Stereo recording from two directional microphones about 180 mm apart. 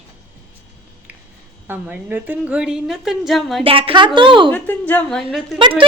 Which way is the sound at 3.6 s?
30° right (ahead or behind).